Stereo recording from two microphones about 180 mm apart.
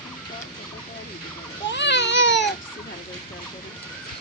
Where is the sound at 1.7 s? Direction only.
80° left.